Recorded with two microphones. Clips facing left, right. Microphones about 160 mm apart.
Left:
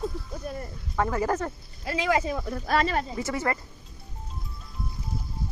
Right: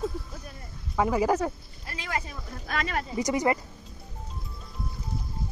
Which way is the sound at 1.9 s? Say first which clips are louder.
Left 9 dB; 90° left.